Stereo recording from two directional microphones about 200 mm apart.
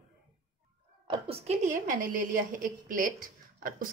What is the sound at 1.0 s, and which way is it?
A woman's voice, 25° right (ahead or behind).